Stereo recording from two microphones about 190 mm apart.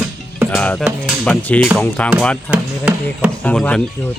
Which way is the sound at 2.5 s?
5° right (ahead or behind).